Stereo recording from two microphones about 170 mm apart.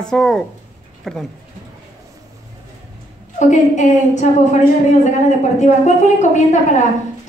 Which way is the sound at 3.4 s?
45° left (ahead or behind).